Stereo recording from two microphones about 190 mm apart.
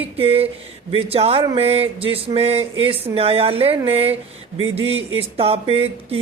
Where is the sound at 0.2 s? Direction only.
30° right (ahead or behind).